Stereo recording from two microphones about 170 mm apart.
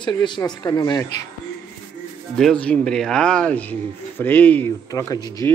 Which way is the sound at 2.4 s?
5° left (ahead or behind).